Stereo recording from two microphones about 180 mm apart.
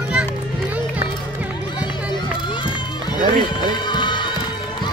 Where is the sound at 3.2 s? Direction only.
25° left (ahead or behind).